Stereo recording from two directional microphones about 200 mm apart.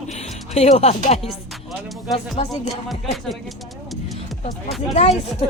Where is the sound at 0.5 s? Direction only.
35° left (ahead or behind).